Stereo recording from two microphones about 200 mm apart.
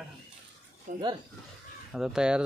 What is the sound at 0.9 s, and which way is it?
Speech, 40° right (ahead or behind).